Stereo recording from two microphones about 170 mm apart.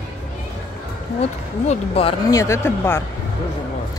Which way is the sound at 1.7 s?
35° left (ahead or behind).